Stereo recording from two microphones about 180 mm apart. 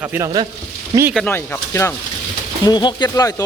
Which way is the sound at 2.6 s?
25° left (ahead or behind).